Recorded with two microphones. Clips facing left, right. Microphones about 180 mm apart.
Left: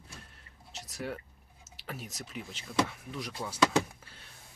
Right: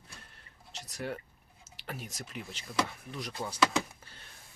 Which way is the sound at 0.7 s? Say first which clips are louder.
Even; 5° left (ahead or behind).